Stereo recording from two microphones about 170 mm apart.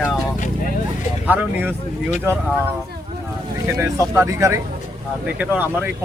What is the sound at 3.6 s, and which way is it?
Speech, 15° right (ahead or behind).